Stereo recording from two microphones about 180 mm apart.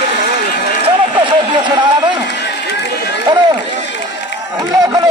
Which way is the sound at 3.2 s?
25° right (ahead or behind).